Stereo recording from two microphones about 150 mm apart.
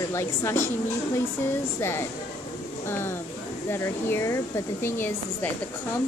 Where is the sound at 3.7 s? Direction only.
15° left (ahead or behind).